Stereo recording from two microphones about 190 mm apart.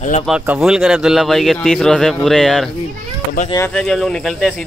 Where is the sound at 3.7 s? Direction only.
5° left (ahead or behind).